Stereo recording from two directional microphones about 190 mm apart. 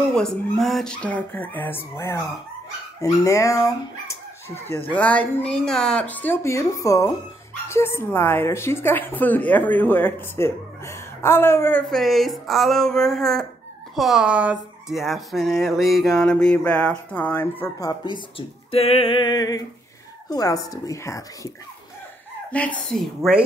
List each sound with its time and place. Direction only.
0.1 s a woman's voice: 5° left (ahead or behind); by 18.2 s 20° left (ahead or behind)
18.7 s music: 30° left (ahead or behind)
20.2 s a woman's voice: 20° left (ahead or behind)
22.5 s speech: 5° left (ahead or behind)